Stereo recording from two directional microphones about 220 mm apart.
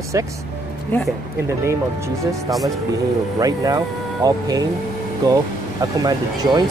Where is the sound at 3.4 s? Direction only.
15° right (ahead or behind).